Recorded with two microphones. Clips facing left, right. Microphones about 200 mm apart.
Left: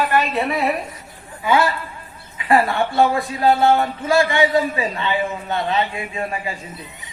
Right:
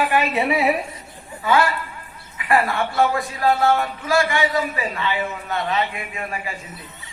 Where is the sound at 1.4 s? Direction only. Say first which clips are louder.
Left 1 dB; 25° left (ahead or behind).